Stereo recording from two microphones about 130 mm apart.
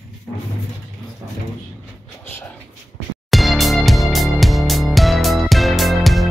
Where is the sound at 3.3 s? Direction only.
Centre (ahead or behind).